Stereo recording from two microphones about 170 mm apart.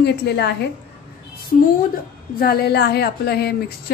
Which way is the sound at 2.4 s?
70° left (ahead or behind).